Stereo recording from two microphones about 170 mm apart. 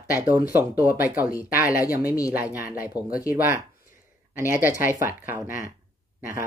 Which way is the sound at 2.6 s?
10° right (ahead or behind).